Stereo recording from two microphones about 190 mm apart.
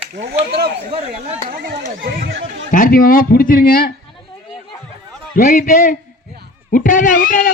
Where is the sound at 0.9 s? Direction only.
35° right (ahead or behind).